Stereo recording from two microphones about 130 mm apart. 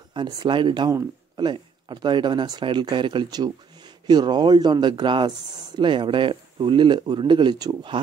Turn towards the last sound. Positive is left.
turn(degrees=-35)  # may be behind; listen again after turning